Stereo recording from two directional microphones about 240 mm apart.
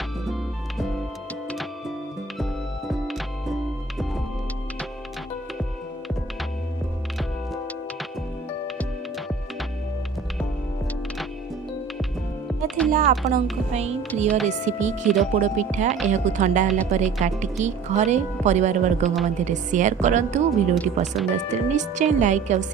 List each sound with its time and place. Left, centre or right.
2.4 s music: centre
12.6 s music: centre
12.9 s speech: right
15.0 s speech: centre
15.4 s speech: right
16.6 s speech: centre
16.9 s speech: right